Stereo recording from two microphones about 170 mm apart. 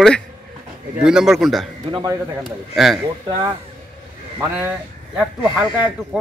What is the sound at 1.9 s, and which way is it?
Speech, 30° right (ahead or behind).